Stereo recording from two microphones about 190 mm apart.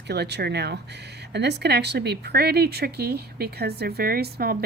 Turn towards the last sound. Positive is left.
turn(degrees=-55)  # may be behind; listen again after turning